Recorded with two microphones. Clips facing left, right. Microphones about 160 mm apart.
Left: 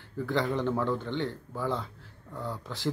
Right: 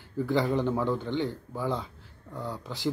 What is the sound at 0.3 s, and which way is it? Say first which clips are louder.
A man's voice: right 2 dB; 5° right (ahead or behind).